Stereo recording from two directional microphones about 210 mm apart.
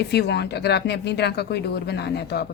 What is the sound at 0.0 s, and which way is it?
Speech, 50° left (ahead or behind).